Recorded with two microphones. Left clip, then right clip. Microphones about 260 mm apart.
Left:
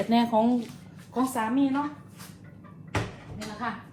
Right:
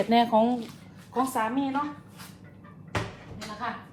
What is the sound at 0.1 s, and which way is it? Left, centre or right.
Speech, right.